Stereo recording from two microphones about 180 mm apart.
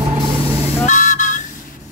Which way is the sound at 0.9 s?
45° left (ahead or behind).